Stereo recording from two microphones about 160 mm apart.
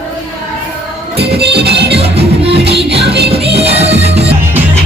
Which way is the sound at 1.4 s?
90° right.